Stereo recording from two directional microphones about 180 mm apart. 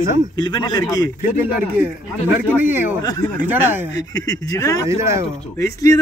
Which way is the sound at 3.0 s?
20° left (ahead or behind).